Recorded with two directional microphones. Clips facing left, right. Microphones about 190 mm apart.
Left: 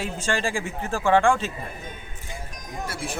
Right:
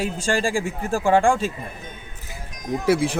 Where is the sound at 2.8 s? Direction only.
90° right.